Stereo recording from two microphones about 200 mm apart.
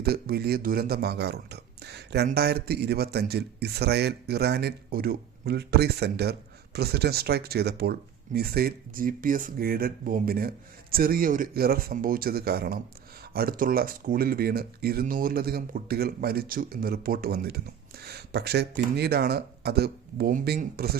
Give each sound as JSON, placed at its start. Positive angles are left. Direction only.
{"t": 0.0, "sound": "speech", "side_deg": -50}